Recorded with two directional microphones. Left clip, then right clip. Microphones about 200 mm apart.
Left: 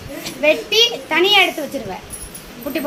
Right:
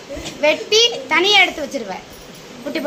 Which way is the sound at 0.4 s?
15° right (ahead or behind).